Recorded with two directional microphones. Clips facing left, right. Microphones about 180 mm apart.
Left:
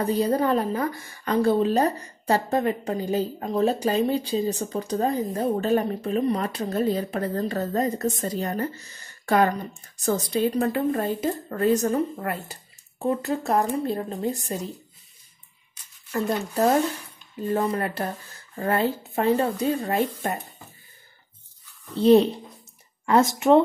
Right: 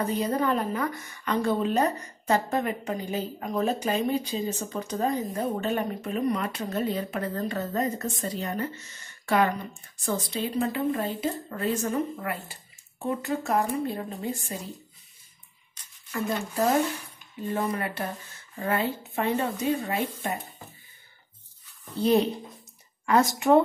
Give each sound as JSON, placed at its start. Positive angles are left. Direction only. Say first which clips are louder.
{"t": 0.0, "sound": "a woman's voice", "louder": "left 4 dB", "side_deg": 35}
{"t": 16.1, "sound": "a woman's voice", "louder": "left 4 dB", "side_deg": 35}
{"t": 21.9, "sound": "a woman's voice", "louder": "left 6 dB", "side_deg": 30}